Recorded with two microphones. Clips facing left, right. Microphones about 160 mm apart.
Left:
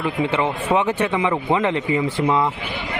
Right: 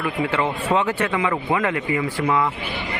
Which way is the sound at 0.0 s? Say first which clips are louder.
Left 2 dB; 20° left (ahead or behind).